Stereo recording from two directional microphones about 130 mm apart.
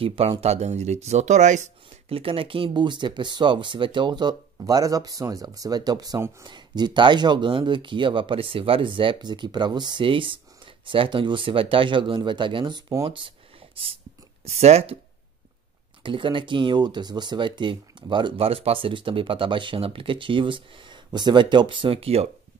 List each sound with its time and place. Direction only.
0.0 s speech: 45° right (ahead or behind)
0.4 s speech: 55° right (ahead or behind)
2.0 s speech: 45° right (ahead or behind)
14.4 s speech: 55° right (ahead or behind)
16.0 s speech: 40° right (ahead or behind)